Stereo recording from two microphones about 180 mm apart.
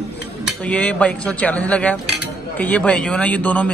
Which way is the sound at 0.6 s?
5° left (ahead or behind).